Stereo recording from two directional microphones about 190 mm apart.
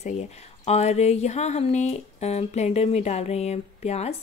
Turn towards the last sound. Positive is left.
turn(degrees=35)  # may be behind; listen again after turning